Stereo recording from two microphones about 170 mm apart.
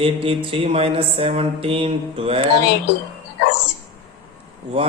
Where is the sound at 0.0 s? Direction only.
35° right (ahead or behind).